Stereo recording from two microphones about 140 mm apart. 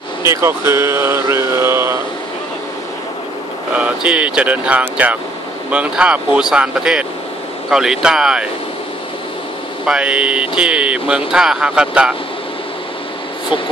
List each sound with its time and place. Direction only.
0.2 s mantra: 20° right (ahead or behind)
3.7 s speech: 10° right (ahead or behind)
9.8 s speech: 10° right (ahead or behind)